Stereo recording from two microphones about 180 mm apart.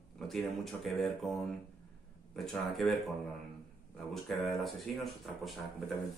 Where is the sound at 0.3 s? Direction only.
Centre (ahead or behind).